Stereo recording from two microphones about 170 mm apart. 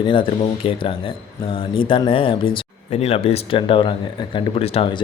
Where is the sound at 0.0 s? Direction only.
30° left (ahead or behind).